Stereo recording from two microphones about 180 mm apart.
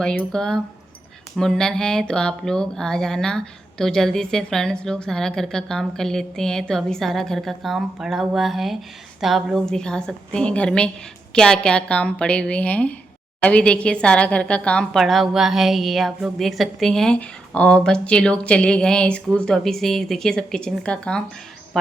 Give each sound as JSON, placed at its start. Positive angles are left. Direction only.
{"t": 0.0, "sound": "a woman's voice", "side_deg": 5}